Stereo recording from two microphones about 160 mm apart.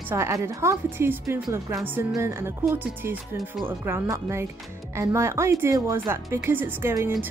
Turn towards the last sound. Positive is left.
turn(degrees=-15)  # may be behind; listen again after turning